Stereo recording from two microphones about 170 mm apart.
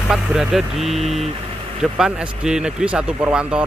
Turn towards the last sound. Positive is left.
turn(degrees=-5)  # may be behind; listen again after turning